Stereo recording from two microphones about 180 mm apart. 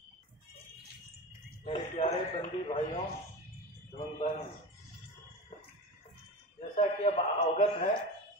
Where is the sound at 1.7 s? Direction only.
30° left (ahead or behind).